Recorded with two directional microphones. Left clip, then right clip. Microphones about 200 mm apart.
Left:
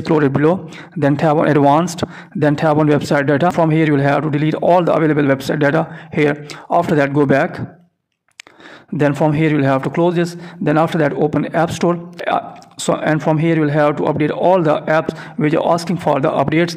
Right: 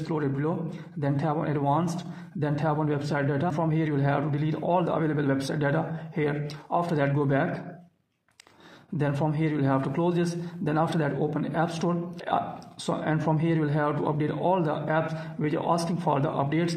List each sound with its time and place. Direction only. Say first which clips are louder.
0.0 s a man's voice: left 15 dB; 45° left (ahead or behind)
8.9 s a man's voice: left 13 dB; 35° left (ahead or behind)